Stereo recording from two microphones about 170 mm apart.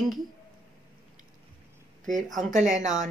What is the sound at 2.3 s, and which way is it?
Speech, 45° right (ahead or behind).